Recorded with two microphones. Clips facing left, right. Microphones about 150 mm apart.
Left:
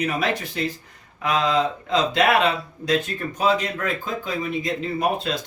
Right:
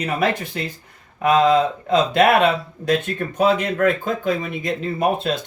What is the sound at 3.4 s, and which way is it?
Speech, 50° right (ahead or behind).